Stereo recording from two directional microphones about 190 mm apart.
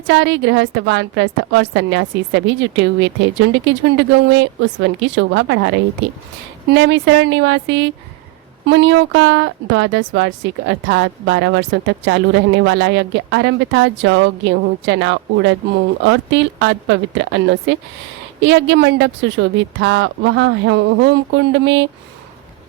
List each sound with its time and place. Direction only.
0.1 s speech: 70° right (ahead or behind)